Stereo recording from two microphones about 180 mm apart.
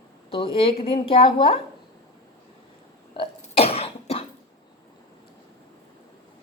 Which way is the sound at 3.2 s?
35° left (ahead or behind).